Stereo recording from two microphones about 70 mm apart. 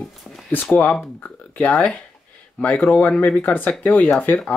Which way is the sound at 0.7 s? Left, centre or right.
Left.